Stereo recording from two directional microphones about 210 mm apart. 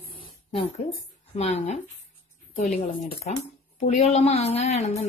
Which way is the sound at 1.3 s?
30° left (ahead or behind).